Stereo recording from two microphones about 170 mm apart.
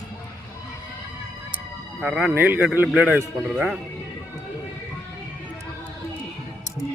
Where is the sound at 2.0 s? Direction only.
Centre (ahead or behind).